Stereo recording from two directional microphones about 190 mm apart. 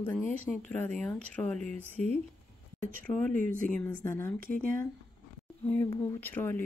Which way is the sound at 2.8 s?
45° right (ahead or behind).